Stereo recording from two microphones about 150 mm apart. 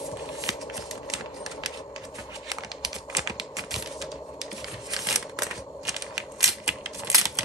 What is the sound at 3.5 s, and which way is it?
Typing, centre (ahead or behind).